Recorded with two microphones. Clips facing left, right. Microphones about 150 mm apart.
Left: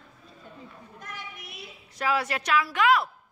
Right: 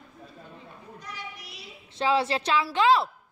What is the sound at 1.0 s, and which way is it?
Child singing, 50° left (ahead or behind).